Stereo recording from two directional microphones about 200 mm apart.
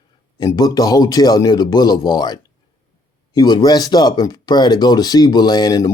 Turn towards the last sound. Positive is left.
turn(degrees=20)  # may be behind; listen again after turning